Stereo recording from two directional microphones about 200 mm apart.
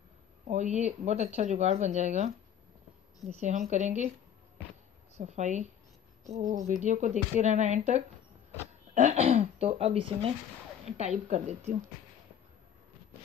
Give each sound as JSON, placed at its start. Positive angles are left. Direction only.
{"t": 0.5, "sound": "speech", "side_deg": -35}
{"t": 3.3, "sound": "speech", "side_deg": -35}
{"t": 5.2, "sound": "speech", "side_deg": -35}